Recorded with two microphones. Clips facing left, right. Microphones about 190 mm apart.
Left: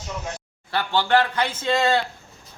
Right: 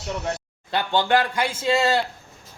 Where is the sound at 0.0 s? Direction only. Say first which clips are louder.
Right 4 dB; 65° right (ahead or behind).